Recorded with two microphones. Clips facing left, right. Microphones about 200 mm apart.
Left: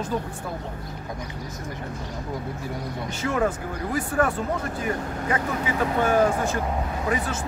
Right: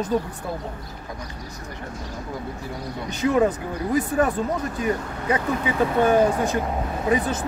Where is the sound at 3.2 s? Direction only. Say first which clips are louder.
Right 5 dB; 20° right (ahead or behind).